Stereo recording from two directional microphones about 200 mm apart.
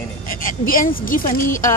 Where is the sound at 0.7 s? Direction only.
45° left (ahead or behind).